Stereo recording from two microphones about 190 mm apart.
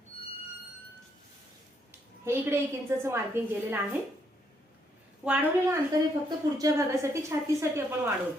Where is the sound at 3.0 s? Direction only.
10° right (ahead or behind).